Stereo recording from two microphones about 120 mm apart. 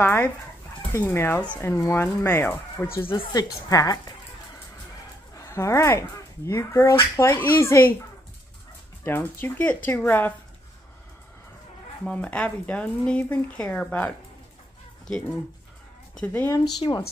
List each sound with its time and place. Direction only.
0.0 s speech: 15° left (ahead or behind)
3.3 s a woman's voice: 30° left (ahead or behind)
5.5 s speech: 25° left (ahead or behind)
9.0 s speech: 20° left (ahead or behind)
12.0 s speech: 10° left (ahead or behind)
16.2 s speech: 15° left (ahead or behind)